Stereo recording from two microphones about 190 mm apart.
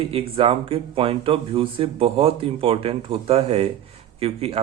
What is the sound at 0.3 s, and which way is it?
Speech, 30° right (ahead or behind).